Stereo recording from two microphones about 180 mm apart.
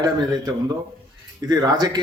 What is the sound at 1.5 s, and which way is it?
Speech, 20° right (ahead or behind).